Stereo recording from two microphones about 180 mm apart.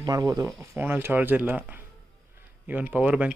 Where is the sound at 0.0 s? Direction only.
20° right (ahead or behind).